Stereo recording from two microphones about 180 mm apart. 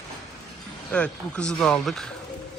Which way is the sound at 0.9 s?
5° left (ahead or behind).